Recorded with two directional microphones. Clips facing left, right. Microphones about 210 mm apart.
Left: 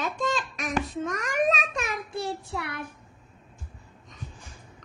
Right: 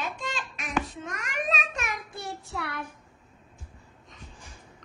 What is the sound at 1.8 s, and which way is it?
A child's voice, 30° left (ahead or behind).